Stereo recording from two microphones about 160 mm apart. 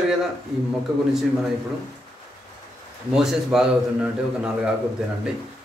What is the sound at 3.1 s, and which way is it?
A man's voice, centre (ahead or behind).